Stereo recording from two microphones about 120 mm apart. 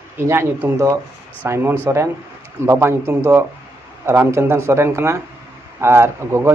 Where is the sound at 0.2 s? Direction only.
20° right (ahead or behind).